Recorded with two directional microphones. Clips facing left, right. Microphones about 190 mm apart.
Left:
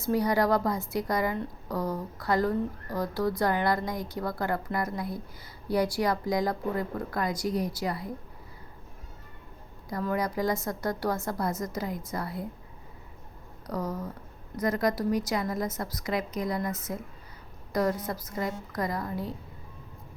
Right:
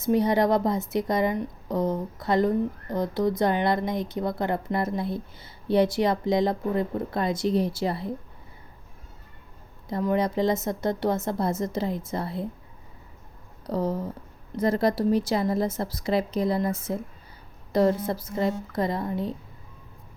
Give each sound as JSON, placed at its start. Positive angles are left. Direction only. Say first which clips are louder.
{"t": 0.0, "sound": "a woman's voice", "louder": "right 4 dB", "side_deg": -20}
{"t": 9.9, "sound": "a woman's voice", "louder": "right 5 dB", "side_deg": -25}
{"t": 13.7, "sound": "a woman's voice", "louder": "right 6 dB", "side_deg": -30}